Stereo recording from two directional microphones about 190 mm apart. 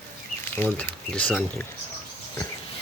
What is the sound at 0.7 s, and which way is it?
Speech, 10° left (ahead or behind).